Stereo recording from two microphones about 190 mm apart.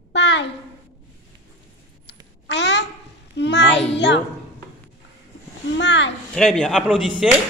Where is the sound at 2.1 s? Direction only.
65° left (ahead or behind).